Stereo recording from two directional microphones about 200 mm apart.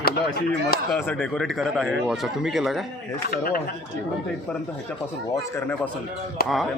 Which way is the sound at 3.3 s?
45° left (ahead or behind).